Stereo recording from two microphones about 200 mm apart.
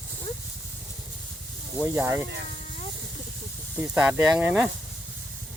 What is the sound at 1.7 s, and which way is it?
Speech, 10° right (ahead or behind).